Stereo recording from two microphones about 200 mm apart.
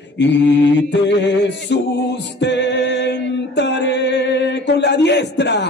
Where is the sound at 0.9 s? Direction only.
60° left (ahead or behind).